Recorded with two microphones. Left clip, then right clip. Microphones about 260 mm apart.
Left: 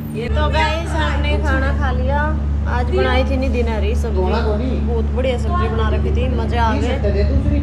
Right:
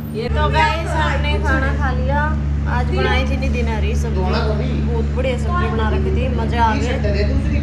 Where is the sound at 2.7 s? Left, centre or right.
Centre.